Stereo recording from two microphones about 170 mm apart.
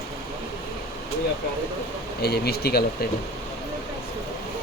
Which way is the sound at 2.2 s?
70° left (ahead or behind).